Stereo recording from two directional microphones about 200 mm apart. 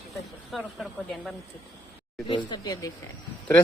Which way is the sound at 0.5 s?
Centre (ahead or behind).